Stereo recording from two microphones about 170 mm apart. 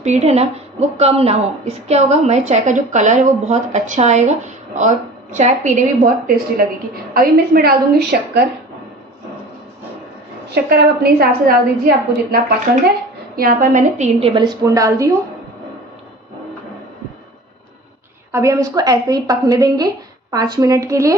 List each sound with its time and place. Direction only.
0.0 s a woman's voice: 40° right (ahead or behind); by 8.5 s 65° right (ahead or behind)
10.5 s a woman's voice: 65° right (ahead or behind); by 14.3 s 45° right (ahead or behind)
14.3 s a woman's voice: 25° right (ahead or behind)
18.3 s a woman's voice: 20° right (ahead or behind)